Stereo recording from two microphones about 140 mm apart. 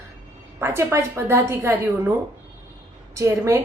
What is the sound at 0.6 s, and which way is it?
A woman's voice, 20° right (ahead or behind).